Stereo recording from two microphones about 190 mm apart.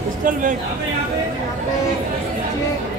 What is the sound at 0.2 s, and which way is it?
Speech, 45° right (ahead or behind).